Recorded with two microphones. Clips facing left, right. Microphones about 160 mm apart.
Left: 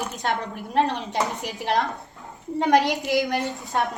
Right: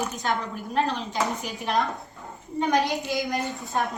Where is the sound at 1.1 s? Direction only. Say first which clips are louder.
Left 1 dB; 80° left.